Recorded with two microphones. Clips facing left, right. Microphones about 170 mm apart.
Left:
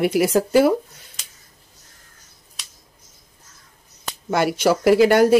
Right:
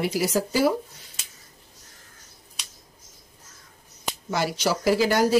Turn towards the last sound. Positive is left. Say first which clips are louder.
# left 7 dB
turn(degrees=60)  # may be behind; listen again after turning